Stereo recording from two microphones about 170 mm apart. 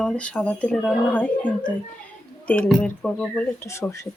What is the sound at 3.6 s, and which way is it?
Speech, 15° left (ahead or behind).